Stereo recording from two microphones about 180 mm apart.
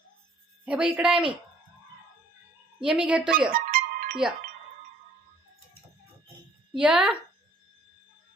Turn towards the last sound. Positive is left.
turn(degrees=-5)  # may be behind; listen again after turning